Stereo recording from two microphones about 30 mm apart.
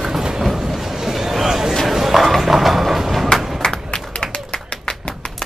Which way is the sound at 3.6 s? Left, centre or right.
Left.